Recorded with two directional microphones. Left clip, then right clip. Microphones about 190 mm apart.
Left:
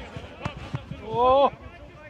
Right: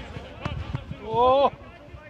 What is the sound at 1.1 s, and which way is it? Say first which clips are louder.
Speech: even; 50° right (ahead or behind).